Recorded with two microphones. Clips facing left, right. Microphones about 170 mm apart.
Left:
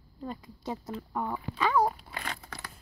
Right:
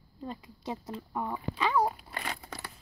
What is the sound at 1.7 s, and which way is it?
Dog, 5° right (ahead or behind).